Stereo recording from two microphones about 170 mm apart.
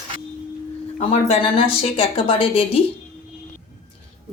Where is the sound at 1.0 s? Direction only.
35° left (ahead or behind).